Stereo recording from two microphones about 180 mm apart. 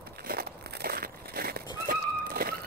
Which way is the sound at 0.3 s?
55° right (ahead or behind).